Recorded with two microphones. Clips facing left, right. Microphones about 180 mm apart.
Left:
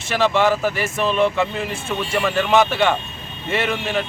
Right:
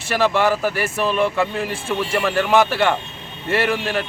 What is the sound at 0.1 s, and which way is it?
A man's voice, 10° right (ahead or behind).